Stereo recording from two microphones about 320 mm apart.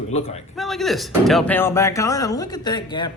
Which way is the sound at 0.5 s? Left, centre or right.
Centre.